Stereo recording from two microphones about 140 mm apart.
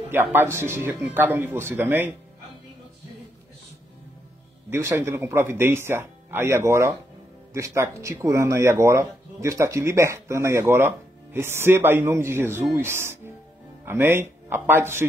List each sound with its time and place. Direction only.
0.1 s speech: 15° right (ahead or behind)
4.6 s speech: 20° right (ahead or behind)